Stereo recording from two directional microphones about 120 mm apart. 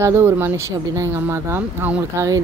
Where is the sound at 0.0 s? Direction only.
20° right (ahead or behind).